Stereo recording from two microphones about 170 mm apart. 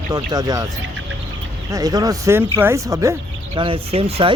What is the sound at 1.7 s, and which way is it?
Speech, 20° right (ahead or behind).